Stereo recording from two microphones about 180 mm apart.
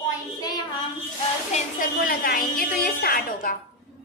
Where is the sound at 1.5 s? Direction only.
50° left (ahead or behind).